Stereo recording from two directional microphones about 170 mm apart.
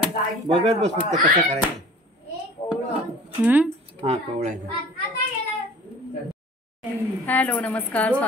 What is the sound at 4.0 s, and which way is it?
Speech, 40° right (ahead or behind).